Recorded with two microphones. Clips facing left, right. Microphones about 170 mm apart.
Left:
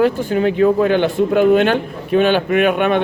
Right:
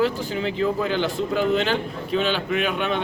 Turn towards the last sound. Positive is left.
turn(degrees=60)  # may be behind; listen again after turning